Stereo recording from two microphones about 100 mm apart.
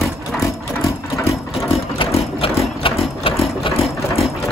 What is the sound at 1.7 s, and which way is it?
Sewing machine, 70° left (ahead or behind).